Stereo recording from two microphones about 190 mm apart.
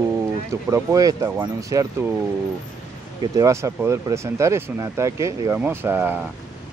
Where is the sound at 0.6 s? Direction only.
20° right (ahead or behind).